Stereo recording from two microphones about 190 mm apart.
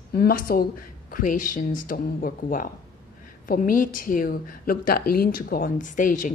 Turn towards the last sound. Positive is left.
turn(degrees=45)  # may be behind; listen again after turning